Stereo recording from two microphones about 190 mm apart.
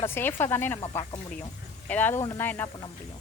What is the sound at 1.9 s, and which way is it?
Speech, 10° left (ahead or behind).